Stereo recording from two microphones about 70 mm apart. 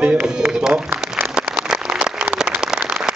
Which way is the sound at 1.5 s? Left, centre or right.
Centre.